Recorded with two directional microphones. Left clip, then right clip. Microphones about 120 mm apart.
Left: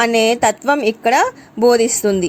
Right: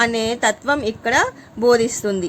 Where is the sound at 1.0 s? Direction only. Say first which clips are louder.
Left 3 dB; 45° left (ahead or behind).